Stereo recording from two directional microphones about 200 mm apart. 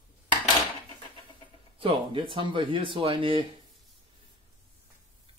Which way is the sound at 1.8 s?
25° right (ahead or behind).